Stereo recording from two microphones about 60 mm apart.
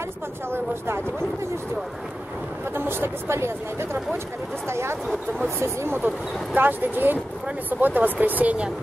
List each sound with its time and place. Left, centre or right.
0.5 s speech: right
2.7 s speech: right
5.9 s speech: right